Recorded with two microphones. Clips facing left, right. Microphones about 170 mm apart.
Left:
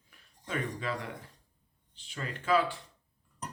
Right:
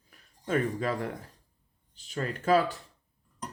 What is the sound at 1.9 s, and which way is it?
Speech, 40° right (ahead or behind).